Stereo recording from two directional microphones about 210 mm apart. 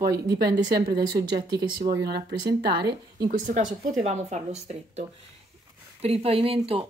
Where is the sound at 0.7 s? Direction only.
45° right (ahead or behind).